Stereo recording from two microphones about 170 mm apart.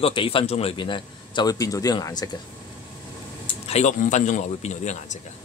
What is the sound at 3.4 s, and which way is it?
Speech, 40° left (ahead or behind).